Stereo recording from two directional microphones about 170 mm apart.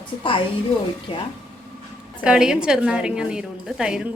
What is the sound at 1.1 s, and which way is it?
Speech, 30° left (ahead or behind).